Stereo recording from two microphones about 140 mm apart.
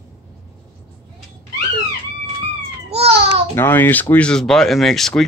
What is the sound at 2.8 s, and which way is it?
Babbling, 45° right (ahead or behind).